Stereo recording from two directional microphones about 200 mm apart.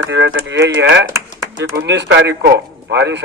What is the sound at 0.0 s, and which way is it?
A man's voice, 65° right (ahead or behind).